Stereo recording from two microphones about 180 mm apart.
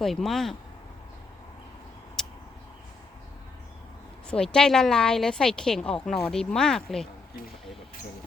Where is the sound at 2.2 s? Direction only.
Centre (ahead or behind).